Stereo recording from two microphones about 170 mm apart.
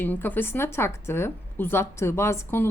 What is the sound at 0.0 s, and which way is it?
Speech, 10° left (ahead or behind).